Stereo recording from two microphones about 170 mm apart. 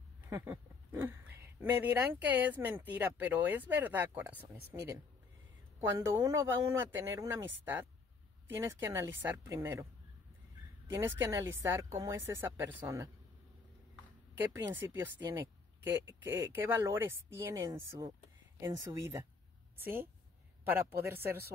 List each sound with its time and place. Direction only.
0.3 s speech: 15° right (ahead or behind)
10.9 s speech: 15° right (ahead or behind)
14.3 s speech: 15° right (ahead or behind)